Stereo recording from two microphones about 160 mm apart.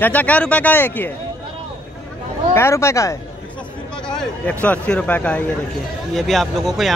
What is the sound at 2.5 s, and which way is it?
Speech, 15° left (ahead or behind).